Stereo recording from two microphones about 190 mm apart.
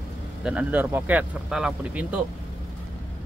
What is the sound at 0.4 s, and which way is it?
Speech, 5° right (ahead or behind).